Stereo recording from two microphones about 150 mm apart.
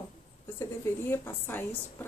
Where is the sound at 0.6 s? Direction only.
15° left (ahead or behind).